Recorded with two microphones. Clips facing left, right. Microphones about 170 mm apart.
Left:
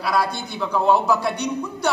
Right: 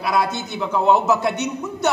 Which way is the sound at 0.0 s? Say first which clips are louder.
Right 1 dB; 20° right (ahead or behind).